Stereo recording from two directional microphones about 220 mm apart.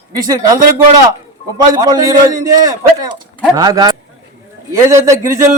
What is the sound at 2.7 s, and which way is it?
A man's voice, 15° right (ahead or behind).